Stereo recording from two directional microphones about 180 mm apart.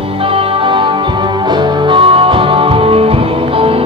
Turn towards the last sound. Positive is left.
turn(degrees=-30)  # may be behind; listen again after turning